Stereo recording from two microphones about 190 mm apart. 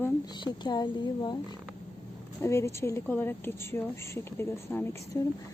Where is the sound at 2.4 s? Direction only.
15° left (ahead or behind).